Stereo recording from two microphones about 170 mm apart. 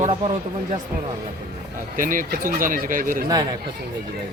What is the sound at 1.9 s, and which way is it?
Speech, 55° right (ahead or behind).